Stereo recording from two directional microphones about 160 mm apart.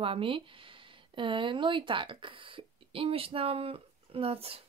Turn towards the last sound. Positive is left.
turn(degrees=-35)  # may be behind; listen again after turning